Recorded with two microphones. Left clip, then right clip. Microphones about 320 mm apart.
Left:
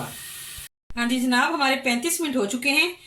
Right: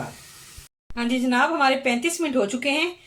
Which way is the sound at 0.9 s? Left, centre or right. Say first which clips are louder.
Even; centre.